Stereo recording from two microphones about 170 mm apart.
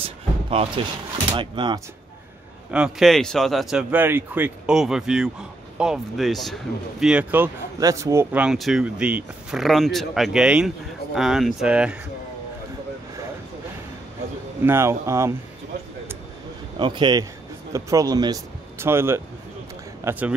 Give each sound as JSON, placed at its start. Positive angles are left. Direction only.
{"t": 0.0, "sound": "a sound", "side_deg": -35}
{"t": 1.3, "sound": "a man's voice", "side_deg": -30}
{"t": 2.7, "sound": "speech", "side_deg": -5}
{"t": 14.6, "sound": "speech", "side_deg": -15}
{"t": 16.7, "sound": "a man's voice", "side_deg": -30}